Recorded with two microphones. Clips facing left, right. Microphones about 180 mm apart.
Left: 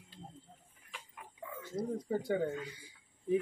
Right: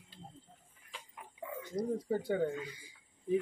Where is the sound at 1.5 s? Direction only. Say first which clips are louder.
Right 2 dB; 15° right (ahead or behind).